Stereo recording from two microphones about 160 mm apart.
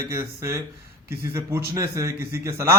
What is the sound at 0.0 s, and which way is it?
Speech, 15° right (ahead or behind).